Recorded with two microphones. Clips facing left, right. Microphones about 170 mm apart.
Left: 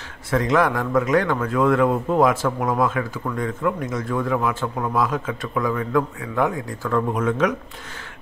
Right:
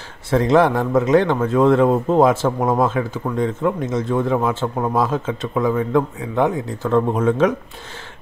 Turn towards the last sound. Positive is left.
turn(degrees=-30)  # may be behind; listen again after turning